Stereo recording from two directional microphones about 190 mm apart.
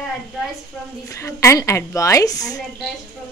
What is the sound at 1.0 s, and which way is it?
A woman's voice, 15° left (ahead or behind).